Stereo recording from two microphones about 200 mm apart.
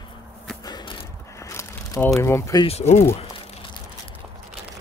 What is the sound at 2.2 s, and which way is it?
Speech, 15° left (ahead or behind).